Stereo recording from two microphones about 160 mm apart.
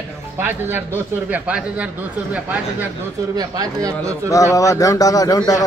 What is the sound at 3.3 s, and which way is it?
Speech, 20° right (ahead or behind).